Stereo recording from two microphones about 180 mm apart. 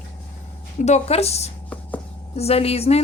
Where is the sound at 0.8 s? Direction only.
35° left (ahead or behind).